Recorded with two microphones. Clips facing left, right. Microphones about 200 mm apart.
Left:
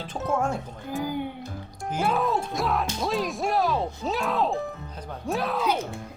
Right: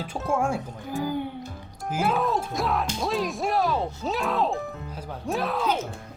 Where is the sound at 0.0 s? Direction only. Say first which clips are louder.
Right 1 dB; 10° right (ahead or behind).